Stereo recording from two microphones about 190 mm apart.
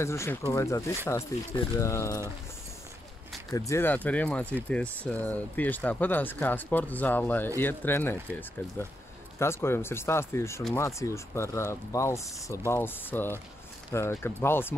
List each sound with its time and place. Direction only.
0.0 s speech: 15° left (ahead or behind)
3.5 s speech: 15° left (ahead or behind)